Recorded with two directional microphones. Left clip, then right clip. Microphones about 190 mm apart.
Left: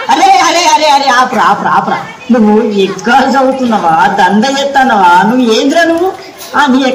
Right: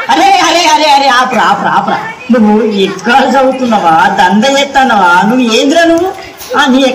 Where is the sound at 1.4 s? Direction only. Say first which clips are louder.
Even; 25° right (ahead or behind).